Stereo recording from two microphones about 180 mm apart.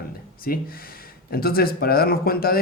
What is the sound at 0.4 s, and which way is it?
Speech, 55° left (ahead or behind).